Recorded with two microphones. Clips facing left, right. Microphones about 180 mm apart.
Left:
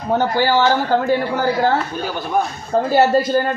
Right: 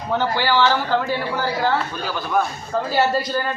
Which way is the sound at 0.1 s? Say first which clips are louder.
Left 4 dB; 45° left (ahead or behind).